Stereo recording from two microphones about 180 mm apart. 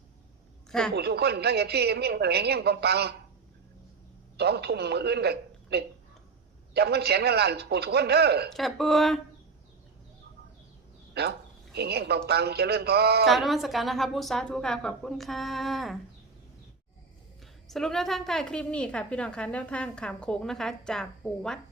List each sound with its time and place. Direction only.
0.9 s a woman's voice: 65° right (ahead or behind)
4.4 s a woman's voice: 65° right (ahead or behind)
8.5 s a woman's voice: centre (ahead or behind)
11.1 s a man's voice: 65° right (ahead or behind)
13.2 s a woman's voice: centre (ahead or behind)
17.4 s a woman's voice: centre (ahead or behind)